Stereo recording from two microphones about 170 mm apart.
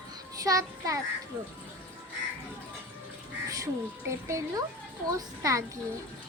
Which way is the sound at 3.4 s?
20° right (ahead or behind).